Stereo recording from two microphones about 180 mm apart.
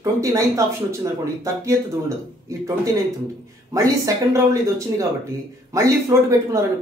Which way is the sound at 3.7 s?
20° right (ahead or behind).